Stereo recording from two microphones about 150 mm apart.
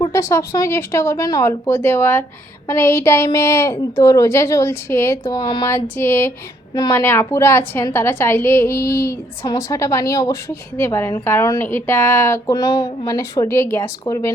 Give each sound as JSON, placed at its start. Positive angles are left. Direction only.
{"t": 0.0, "sound": "a woman's voice", "side_deg": 20}
{"t": 5.6, "sound": "a woman's voice", "side_deg": 15}
{"t": 6.7, "sound": "a woman's voice", "side_deg": 30}
{"t": 7.0, "sound": "a woman's voice", "side_deg": 15}